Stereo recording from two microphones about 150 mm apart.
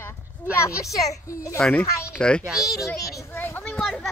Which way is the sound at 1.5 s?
10° left (ahead or behind).